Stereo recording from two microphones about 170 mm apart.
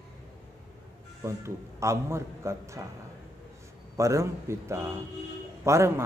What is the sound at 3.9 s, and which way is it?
A man's voice, 15° right (ahead or behind).